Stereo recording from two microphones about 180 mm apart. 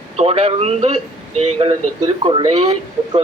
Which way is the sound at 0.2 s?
35° right (ahead or behind).